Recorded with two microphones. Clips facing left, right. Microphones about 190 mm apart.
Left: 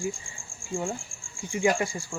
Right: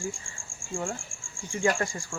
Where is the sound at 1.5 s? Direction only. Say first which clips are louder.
Left 2 dB; 15° left (ahead or behind).